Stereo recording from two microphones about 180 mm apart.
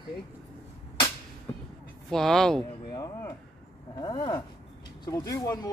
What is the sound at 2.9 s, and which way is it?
Speech, 20° left (ahead or behind).